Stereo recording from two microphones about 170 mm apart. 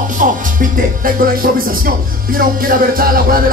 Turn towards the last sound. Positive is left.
turn(degrees=-55)  # may be behind; listen again after turning